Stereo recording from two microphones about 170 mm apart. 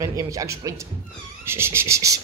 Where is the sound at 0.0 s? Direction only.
20° right (ahead or behind).